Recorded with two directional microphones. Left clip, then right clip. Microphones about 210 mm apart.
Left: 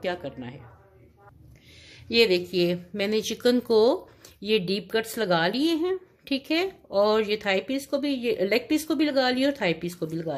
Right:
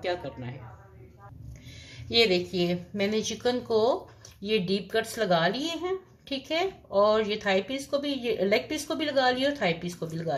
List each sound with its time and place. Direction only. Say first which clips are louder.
0.0 s a woman's voice: left 1 dB; 35° left (ahead or behind)
1.9 s a woman's voice: left 2 dB; 25° left (ahead or behind)